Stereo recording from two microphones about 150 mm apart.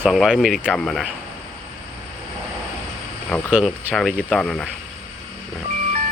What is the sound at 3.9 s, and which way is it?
Speech, 5° left (ahead or behind).